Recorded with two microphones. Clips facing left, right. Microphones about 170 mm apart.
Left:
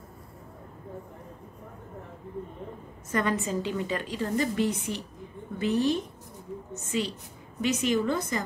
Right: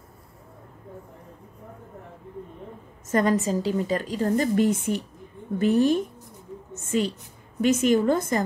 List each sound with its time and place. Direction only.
3.1 s a woman's voice: 40° right (ahead or behind)